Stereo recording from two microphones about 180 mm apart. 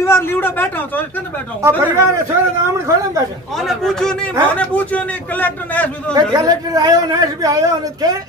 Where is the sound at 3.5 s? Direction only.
Centre (ahead or behind).